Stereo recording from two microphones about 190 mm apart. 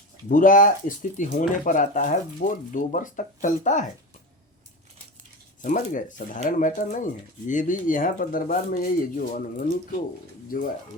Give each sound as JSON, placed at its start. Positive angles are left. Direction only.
{"t": 0.3, "sound": "speech", "side_deg": 45}
{"t": 5.6, "sound": "speech", "side_deg": 45}